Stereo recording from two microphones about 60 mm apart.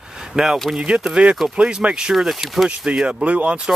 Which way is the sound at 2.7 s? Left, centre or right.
Centre.